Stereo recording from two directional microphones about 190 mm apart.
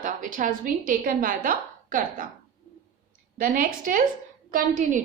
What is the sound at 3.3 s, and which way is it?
A woman's voice, 45° right (ahead or behind).